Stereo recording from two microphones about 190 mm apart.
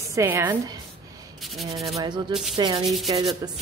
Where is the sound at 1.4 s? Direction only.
Centre (ahead or behind).